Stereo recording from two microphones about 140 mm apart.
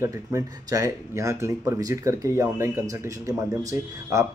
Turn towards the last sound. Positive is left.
turn(degrees=-20)  # may be behind; listen again after turning